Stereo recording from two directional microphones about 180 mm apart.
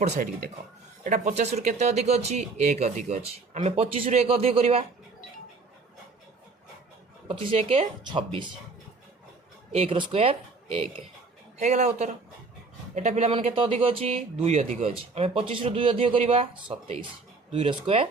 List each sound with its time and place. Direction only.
1.0 s speech: 40° right (ahead or behind)
7.3 s speech: 30° right (ahead or behind)
9.7 s speech: 30° right (ahead or behind)
11.6 s speech: 40° right (ahead or behind)